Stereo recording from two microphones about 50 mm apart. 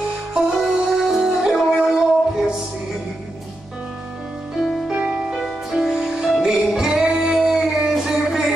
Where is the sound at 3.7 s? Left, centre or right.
Centre.